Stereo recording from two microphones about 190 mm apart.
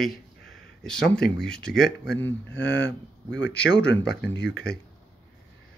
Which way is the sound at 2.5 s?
70° left (ahead or behind).